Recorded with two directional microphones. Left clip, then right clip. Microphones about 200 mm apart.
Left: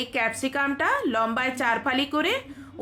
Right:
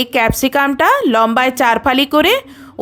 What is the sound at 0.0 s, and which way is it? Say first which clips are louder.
A woman's voice: right 12 dB; 50° right (ahead or behind).